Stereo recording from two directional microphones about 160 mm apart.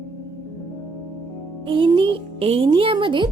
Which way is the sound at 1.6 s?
30° right (ahead or behind).